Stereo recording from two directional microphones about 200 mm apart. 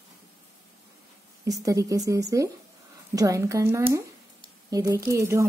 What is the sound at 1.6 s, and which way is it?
A woman's voice, 15° right (ahead or behind).